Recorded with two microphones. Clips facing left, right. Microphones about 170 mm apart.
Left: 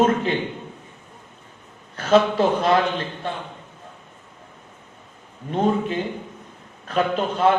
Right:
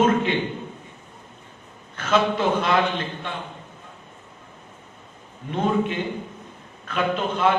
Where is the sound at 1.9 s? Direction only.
35° left (ahead or behind).